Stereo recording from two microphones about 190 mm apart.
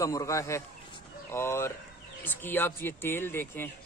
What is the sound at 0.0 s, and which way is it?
Speech, 15° left (ahead or behind).